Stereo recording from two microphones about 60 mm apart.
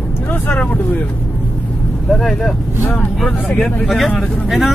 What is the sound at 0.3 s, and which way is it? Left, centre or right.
Speech, left.